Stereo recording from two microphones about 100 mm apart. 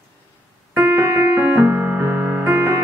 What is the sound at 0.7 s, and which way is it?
Music, 20° right (ahead or behind).